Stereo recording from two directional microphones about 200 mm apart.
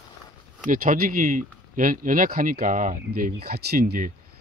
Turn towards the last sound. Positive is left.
turn(degrees=-50)  # may be behind; listen again after turning